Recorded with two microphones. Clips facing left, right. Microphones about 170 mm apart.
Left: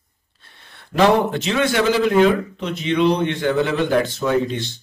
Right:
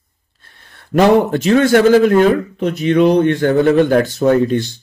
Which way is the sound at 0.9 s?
45° right (ahead or behind).